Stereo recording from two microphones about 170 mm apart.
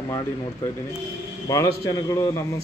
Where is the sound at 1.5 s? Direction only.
20° left (ahead or behind).